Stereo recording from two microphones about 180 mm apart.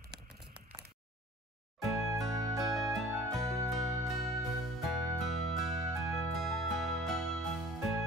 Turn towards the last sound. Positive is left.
turn(degrees=0)  # may be behind; listen again after turning